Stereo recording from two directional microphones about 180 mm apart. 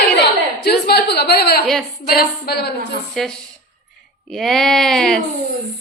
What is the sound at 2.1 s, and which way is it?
Speech, 60° left (ahead or behind).